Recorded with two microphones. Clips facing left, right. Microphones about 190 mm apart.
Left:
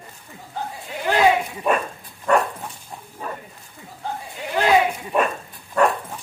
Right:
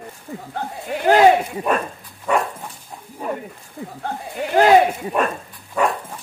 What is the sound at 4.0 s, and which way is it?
Speech, 55° right (ahead or behind).